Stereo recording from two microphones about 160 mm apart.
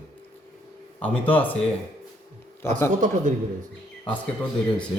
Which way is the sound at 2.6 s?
15° left (ahead or behind).